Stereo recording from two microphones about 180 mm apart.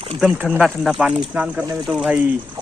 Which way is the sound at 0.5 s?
Centre (ahead or behind).